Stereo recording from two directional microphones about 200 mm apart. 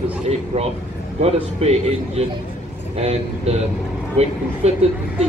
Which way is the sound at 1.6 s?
30° right (ahead or behind).